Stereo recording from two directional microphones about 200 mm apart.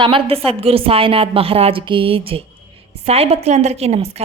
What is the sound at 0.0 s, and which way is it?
A woman's voice, 25° right (ahead or behind).